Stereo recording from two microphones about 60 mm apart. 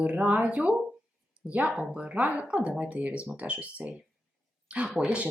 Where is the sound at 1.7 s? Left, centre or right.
Centre.